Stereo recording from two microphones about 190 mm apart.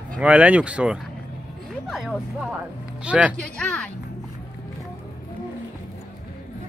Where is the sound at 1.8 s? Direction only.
Centre (ahead or behind).